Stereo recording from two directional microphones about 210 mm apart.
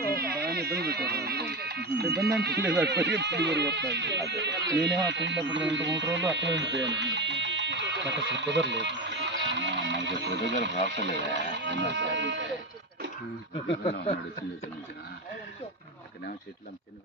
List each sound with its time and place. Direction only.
0.2 s speech: 50° right (ahead or behind)